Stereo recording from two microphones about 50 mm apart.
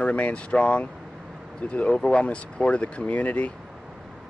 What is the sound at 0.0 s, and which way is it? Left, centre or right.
Speech, left.